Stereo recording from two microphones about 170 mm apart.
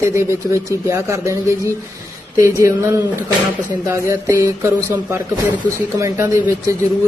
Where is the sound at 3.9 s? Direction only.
15° right (ahead or behind).